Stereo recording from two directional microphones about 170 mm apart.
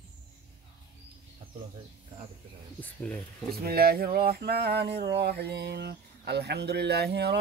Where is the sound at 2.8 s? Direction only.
10° left (ahead or behind).